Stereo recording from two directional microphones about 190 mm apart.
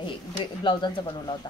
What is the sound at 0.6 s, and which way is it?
Speech, 25° left (ahead or behind).